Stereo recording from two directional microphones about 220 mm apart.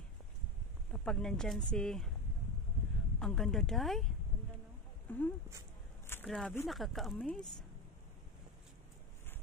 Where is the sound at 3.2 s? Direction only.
Centre (ahead or behind).